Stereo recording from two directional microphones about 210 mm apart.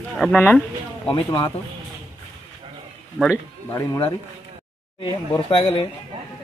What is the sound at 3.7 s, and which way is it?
Speech, 15° left (ahead or behind).